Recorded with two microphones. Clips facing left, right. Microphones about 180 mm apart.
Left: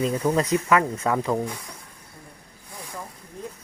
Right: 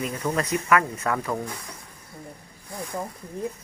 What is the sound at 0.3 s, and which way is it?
Speech, 25° left (ahead or behind).